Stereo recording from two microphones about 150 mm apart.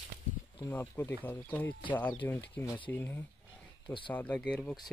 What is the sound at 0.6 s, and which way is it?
Speech, 15° left (ahead or behind).